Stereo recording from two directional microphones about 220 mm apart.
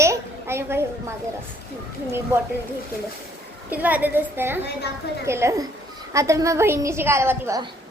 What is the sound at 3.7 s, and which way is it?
A woman's voice, 5° right (ahead or behind).